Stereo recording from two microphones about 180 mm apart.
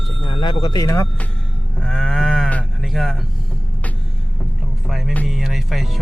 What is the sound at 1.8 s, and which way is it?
Livestock, 5° left (ahead or behind).